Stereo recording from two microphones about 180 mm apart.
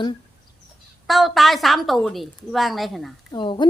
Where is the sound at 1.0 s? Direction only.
Centre (ahead or behind).